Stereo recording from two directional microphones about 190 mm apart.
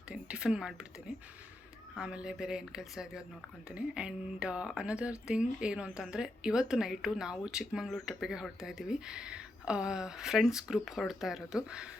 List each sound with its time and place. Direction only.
0.1 s a woman's voice: 5° right (ahead or behind)
2.0 s a woman's voice: 5° right (ahead or behind)